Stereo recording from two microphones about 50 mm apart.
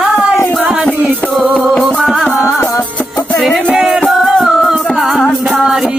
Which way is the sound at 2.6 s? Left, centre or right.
Left.